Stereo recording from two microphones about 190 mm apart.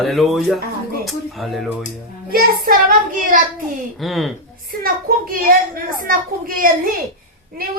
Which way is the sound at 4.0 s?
Centre (ahead or behind).